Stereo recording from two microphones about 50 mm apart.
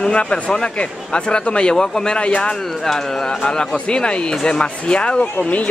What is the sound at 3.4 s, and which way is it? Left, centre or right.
Speech, centre.